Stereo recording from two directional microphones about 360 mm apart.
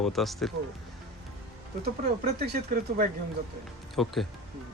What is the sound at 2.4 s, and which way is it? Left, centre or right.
Speech, right.